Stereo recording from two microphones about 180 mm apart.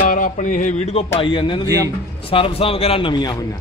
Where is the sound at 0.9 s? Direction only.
25° left (ahead or behind).